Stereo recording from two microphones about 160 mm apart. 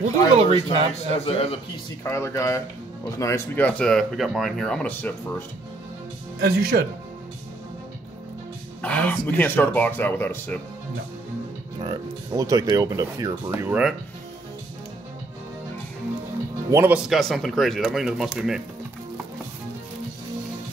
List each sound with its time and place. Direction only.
0.4 s speech: 35° right (ahead or behind)
1.2 s a man's voice: 35° left (ahead or behind)
2.0 s speech: 15° left (ahead or behind)
6.4 s speech: 70° right (ahead or behind)
8.8 s speech: 10° left (ahead or behind)
11.8 s speech: 30° right (ahead or behind); by 13.9 s 10° right (ahead or behind)
16.7 s speech: 15° right (ahead or behind)
17.1 s speech: centre (ahead or behind)